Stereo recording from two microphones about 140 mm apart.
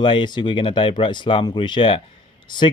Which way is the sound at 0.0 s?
35° left (ahead or behind).